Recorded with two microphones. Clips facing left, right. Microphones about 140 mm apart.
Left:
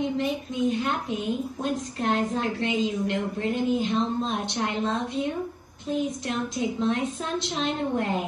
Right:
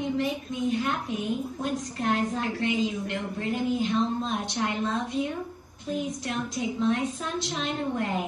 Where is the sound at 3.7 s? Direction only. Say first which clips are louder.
Left 1 dB; 25° left (ahead or behind).